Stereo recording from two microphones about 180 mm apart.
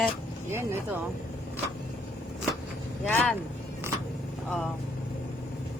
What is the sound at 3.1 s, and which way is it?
Speech, 10° left (ahead or behind).